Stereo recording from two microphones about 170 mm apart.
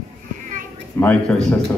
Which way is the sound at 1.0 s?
10° left (ahead or behind).